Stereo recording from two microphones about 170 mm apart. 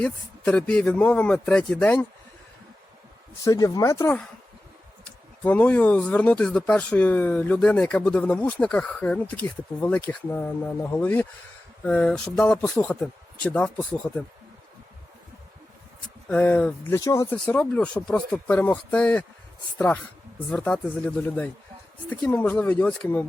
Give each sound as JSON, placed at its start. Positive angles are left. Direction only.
{"t": 0.0, "sound": "speech", "side_deg": 5}
{"t": 3.4, "sound": "speech", "side_deg": 20}
{"t": 5.4, "sound": "speech", "side_deg": 10}
{"t": 16.3, "sound": "speech", "side_deg": 10}
{"t": 17.0, "sound": "speech", "side_deg": 20}
{"t": 17.3, "sound": "speech", "side_deg": 5}
{"t": 20.5, "sound": "speech", "side_deg": 5}